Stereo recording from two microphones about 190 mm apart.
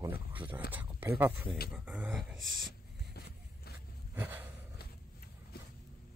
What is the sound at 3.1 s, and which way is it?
Vehicle, 55° left (ahead or behind).